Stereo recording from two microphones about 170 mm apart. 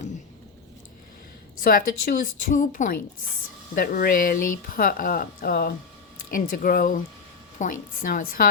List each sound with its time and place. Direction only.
1.6 s a woman's voice: 60° left (ahead or behind)